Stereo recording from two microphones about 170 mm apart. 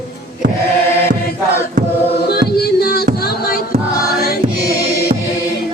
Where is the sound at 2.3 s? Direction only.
65° left (ahead or behind).